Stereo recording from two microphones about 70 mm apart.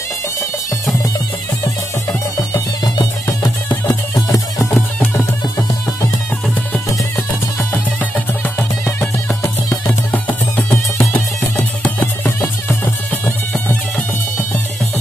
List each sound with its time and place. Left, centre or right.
2.3 s music: left
9.4 s music: left
10.5 s music: left